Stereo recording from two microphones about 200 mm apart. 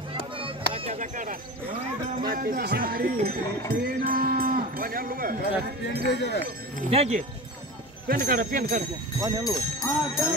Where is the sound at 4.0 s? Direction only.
45° right (ahead or behind).